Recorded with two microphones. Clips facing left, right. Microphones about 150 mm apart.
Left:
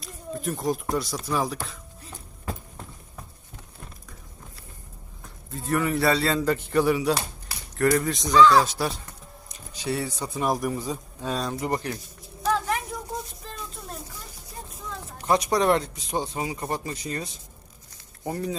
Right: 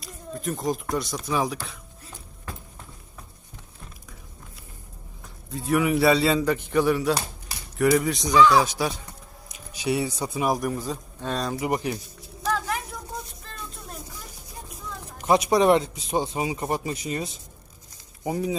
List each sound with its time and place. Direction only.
0.0 s speech: centre (ahead or behind)
5.5 s a man's voice: centre (ahead or behind)
6.7 s speech: centre (ahead or behind)
8.2 s a man's voice: 20° right (ahead or behind)
8.4 s speech: centre (ahead or behind)
9.5 s a man's voice: 15° right (ahead or behind)
12.5 s a sound: centre (ahead or behind)
15.2 s a man's voice: 15° right (ahead or behind)
18.3 s a man's voice: 10° right (ahead or behind)